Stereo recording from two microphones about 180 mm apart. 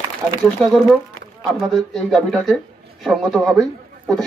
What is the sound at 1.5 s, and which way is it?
A man's voice, centre (ahead or behind).